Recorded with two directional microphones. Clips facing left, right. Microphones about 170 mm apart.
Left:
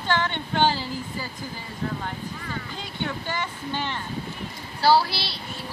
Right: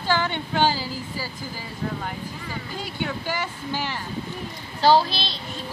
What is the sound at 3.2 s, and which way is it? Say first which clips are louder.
Speech: right 2 dB; 5° right (ahead or behind).